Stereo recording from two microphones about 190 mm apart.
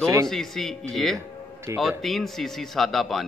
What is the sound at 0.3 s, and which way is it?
Speech, centre (ahead or behind).